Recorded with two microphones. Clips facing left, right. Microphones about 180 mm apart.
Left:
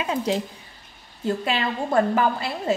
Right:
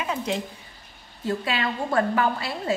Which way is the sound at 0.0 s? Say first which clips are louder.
Left 3 dB; 30° left (ahead or behind).